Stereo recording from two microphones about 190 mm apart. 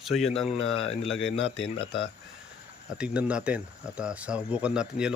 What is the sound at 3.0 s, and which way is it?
Speech, 5° right (ahead or behind).